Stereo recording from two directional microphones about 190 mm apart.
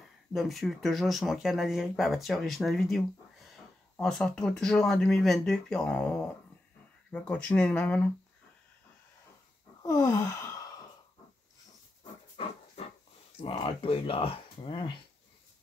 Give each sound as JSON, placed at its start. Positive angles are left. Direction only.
{"t": 0.3, "sound": "speech", "side_deg": 0}
{"t": 9.8, "sound": "gasp", "side_deg": 15}
{"t": 13.4, "sound": "speech", "side_deg": 30}